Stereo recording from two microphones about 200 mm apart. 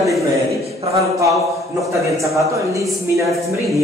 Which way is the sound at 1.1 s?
15° right (ahead or behind).